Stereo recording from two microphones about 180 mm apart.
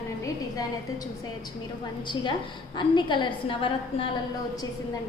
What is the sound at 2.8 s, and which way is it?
A woman's voice, 25° left (ahead or behind).